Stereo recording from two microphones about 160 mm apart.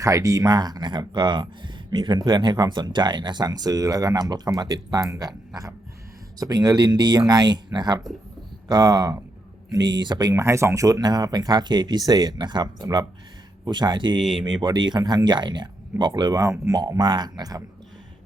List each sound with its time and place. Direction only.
0.0 s speech: 20° right (ahead or behind)
6.4 s speech: 25° right (ahead or behind)